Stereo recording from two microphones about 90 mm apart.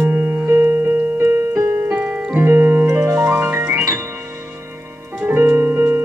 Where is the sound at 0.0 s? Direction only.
20° right (ahead or behind).